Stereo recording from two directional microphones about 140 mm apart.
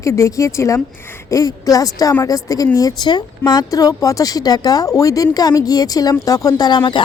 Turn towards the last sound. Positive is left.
turn(degrees=35)  # may be behind; listen again after turning